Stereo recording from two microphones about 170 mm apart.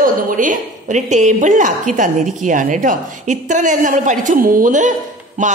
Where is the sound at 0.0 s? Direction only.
50° right (ahead or behind).